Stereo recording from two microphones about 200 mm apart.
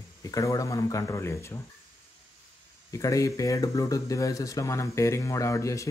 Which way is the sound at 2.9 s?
15° left (ahead or behind).